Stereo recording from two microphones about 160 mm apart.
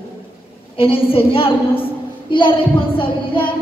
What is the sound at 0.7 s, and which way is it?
A woman's voice, 35° left (ahead or behind).